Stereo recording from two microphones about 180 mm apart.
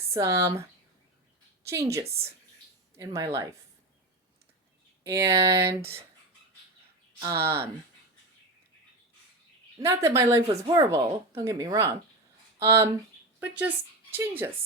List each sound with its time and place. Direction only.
0.1 s speech: 15° right (ahead or behind)
1.6 s speech: 15° right (ahead or behind)
5.0 s speech: 15° right (ahead or behind)
7.2 s speech: 15° right (ahead or behind)
9.7 s a woman's voice: 15° right (ahead or behind)